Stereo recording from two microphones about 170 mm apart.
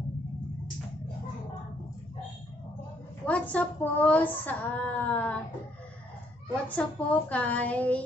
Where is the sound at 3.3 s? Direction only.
10° left (ahead or behind).